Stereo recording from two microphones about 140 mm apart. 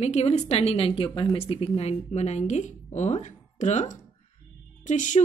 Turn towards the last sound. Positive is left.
turn(degrees=60)  # may be behind; listen again after turning